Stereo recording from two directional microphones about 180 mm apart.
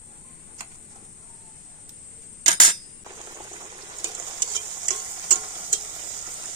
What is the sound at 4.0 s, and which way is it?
Stir, 20° right (ahead or behind).